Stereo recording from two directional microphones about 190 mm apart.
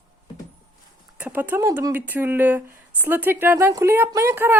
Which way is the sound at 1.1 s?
10° right (ahead or behind).